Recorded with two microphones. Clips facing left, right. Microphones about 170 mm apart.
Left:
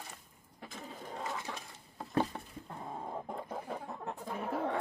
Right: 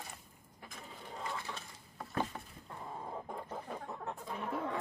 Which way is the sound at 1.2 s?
20° left (ahead or behind).